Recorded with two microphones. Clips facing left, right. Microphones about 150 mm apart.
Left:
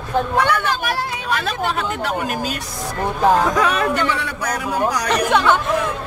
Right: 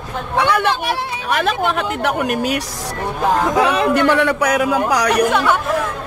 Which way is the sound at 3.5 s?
20° right (ahead or behind).